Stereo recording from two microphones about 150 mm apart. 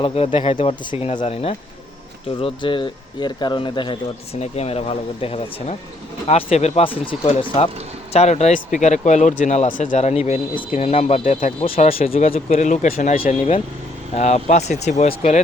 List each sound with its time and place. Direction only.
0.0 s speech: 35° left (ahead or behind)
4.4 s speech: 45° left (ahead or behind)
11.9 s speech: 40° left (ahead or behind)
13.2 s speech: 40° left (ahead or behind)